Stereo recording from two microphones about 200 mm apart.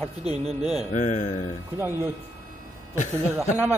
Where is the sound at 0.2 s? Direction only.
30° right (ahead or behind).